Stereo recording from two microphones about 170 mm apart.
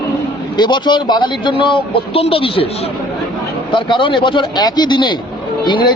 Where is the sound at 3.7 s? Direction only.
30° left (ahead or behind).